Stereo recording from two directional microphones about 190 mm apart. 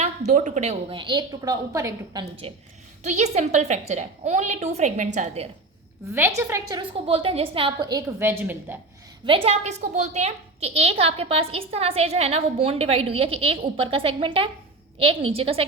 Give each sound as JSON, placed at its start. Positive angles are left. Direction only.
{"t": 0.0, "sound": "a woman's voice", "side_deg": -40}
{"t": 2.4, "sound": "a woman's voice", "side_deg": -30}
{"t": 6.1, "sound": "a woman's voice", "side_deg": -15}
{"t": 6.9, "sound": "a woman's voice", "side_deg": -30}
{"t": 9.2, "sound": "a woman's voice", "side_deg": -30}